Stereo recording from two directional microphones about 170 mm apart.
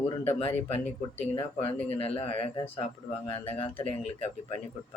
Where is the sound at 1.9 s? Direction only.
35° left (ahead or behind).